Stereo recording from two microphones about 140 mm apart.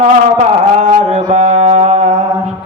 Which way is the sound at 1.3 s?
50° right (ahead or behind).